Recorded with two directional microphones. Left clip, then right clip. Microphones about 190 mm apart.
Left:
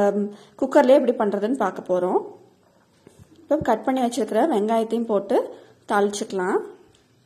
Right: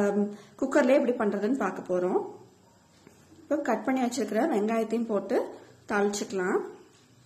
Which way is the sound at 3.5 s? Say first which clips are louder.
Left 7 dB; 30° left (ahead or behind).